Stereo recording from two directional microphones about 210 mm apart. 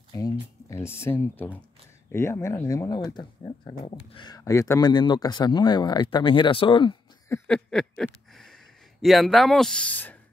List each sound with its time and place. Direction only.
0.1 s speech: 15° left (ahead or behind)